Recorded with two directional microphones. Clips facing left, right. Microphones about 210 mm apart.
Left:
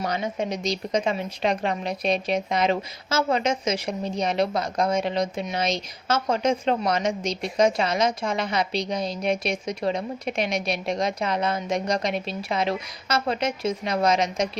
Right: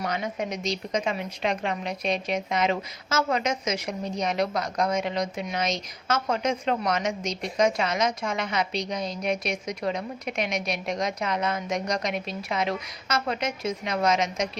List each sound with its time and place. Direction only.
0.0 s a woman's voice: 30° left (ahead or behind)